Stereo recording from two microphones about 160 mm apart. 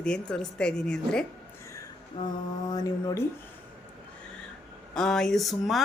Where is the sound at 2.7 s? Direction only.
25° left (ahead or behind).